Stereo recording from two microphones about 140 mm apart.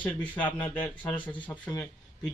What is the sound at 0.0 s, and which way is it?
Speech, 10° left (ahead or behind).